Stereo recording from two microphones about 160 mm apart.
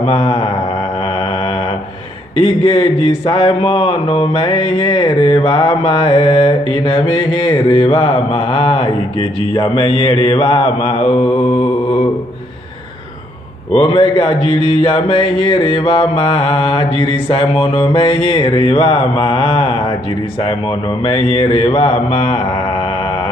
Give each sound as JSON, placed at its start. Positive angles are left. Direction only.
{"t": 0.0, "sound": "speech", "side_deg": 35}
{"t": 1.0, "sound": "mantra", "side_deg": 35}
{"t": 2.3, "sound": "speech", "side_deg": 35}
{"t": 11.3, "sound": "mantra", "side_deg": 40}
{"t": 13.7, "sound": "speech", "side_deg": 35}